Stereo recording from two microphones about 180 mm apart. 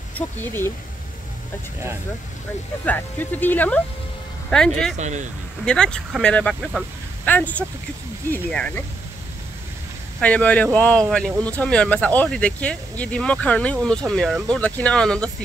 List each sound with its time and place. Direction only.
0.1 s speech: 10° left (ahead or behind)
2.8 s speech: 10° left (ahead or behind)
4.9 s speech: 40° right (ahead or behind)
5.7 s speech: 5° left (ahead or behind)
10.2 s speech: 10° left (ahead or behind)